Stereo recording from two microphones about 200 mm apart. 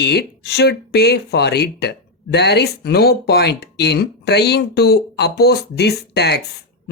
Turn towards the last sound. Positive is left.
turn(degrees=55)  # may be behind; listen again after turning